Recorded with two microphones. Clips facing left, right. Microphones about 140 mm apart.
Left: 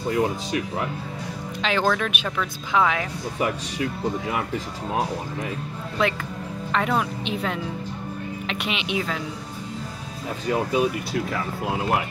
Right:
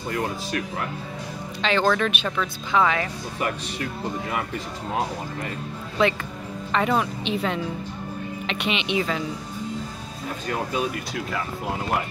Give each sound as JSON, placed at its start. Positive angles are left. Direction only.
{"t": 0.1, "sound": "speech", "side_deg": 15}
{"t": 1.6, "sound": "a woman's voice", "side_deg": 5}
{"t": 6.0, "sound": "a woman's voice", "side_deg": 0}
{"t": 10.5, "sound": "speech", "side_deg": 10}